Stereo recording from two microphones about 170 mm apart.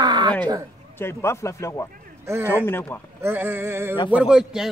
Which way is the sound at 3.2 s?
15° right (ahead or behind).